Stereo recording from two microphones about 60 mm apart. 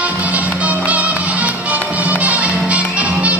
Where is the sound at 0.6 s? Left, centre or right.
Right.